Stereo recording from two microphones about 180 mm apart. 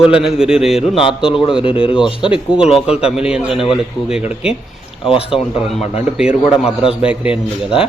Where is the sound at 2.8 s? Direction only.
5° right (ahead or behind).